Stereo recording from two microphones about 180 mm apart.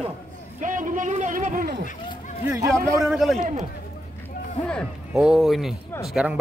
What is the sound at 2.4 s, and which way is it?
Speech, 20° right (ahead or behind).